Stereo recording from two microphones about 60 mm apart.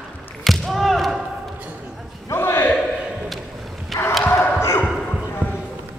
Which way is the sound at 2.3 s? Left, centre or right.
Left.